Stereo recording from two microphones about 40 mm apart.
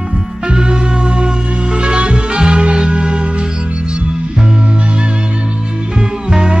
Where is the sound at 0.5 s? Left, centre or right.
Right.